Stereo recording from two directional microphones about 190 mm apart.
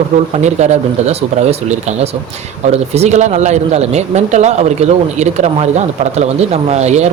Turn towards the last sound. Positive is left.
turn(degrees=-35)  # may be behind; listen again after turning